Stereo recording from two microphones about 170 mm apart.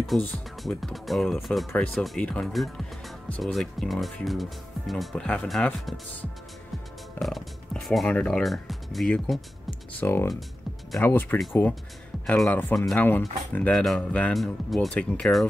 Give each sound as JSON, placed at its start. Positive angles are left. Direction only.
{"t": 0.1, "sound": "speech", "side_deg": 0}
{"t": 7.2, "sound": "speech", "side_deg": 0}